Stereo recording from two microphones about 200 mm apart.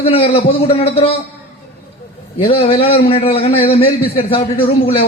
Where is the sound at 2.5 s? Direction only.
30° left (ahead or behind).